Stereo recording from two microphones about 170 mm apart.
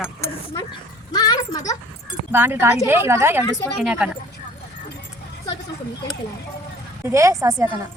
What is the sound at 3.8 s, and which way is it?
Speech, 5° right (ahead or behind).